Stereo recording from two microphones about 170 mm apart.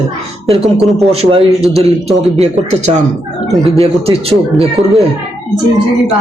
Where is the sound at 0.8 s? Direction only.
Centre (ahead or behind).